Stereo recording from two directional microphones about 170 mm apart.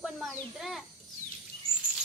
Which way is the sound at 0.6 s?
Centre (ahead or behind).